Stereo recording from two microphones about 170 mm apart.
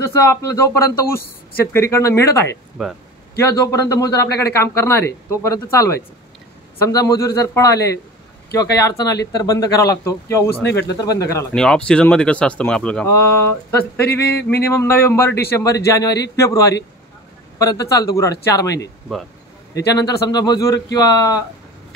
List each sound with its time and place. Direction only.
0.0 s speech: 15° left (ahead or behind)
2.8 s speech: centre (ahead or behind)
3.5 s speech: 20° left (ahead or behind)
8.7 s speech: 20° left (ahead or behind)
10.5 s speech: 75° left (ahead or behind)
10.8 s speech: 20° left (ahead or behind)
11.5 s speech: 5° left (ahead or behind); by 21.4 s 20° left (ahead or behind)